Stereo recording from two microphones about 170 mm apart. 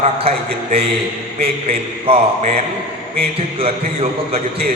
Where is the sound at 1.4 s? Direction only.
35° right (ahead or behind).